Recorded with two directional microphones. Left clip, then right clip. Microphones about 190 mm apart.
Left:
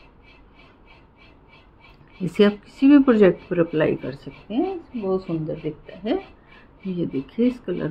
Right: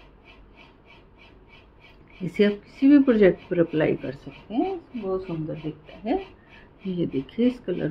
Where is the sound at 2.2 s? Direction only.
20° left (ahead or behind).